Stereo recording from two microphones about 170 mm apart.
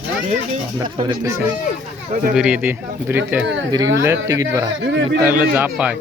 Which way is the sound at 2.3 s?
5° right (ahead or behind).